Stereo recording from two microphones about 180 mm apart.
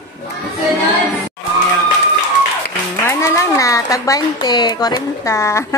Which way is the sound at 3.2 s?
15° left (ahead or behind).